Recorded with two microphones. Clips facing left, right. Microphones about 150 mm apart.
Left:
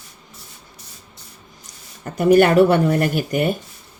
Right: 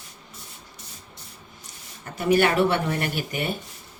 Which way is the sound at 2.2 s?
45° left (ahead or behind).